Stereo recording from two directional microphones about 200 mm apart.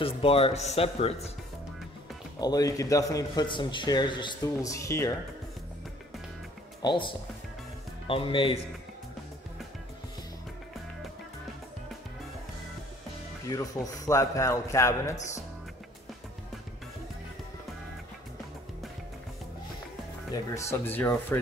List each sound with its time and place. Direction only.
0.0 s a man's voice: 30° left (ahead or behind)
2.4 s a man's voice: 20° left (ahead or behind)
6.8 s a man's voice: 25° left (ahead or behind)
13.5 s a man's voice: 15° left (ahead or behind)
20.5 s a man's voice: 10° left (ahead or behind)